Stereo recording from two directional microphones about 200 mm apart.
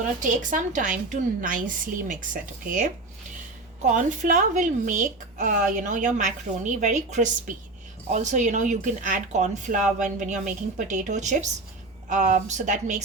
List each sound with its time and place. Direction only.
0.2 s a woman's voice: 40° right (ahead or behind)